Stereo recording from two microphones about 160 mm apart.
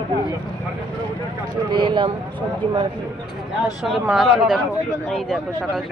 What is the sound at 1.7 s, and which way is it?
Speech, 30° right (ahead or behind).